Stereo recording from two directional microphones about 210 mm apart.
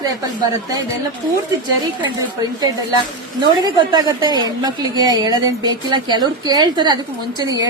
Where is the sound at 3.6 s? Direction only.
20° right (ahead or behind).